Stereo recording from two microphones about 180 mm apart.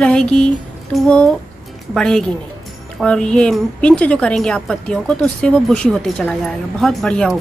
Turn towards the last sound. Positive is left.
turn(degrees=5)  # may be behind; listen again after turning